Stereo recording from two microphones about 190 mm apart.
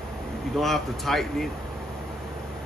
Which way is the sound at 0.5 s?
Centre (ahead or behind).